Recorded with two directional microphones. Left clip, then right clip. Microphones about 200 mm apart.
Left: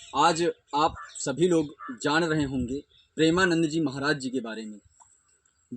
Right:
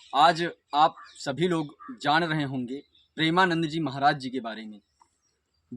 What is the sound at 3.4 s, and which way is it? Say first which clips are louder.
Speech: even; 20° right (ahead or behind).